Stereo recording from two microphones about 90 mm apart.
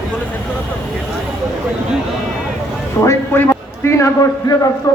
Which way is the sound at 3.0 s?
25° left (ahead or behind).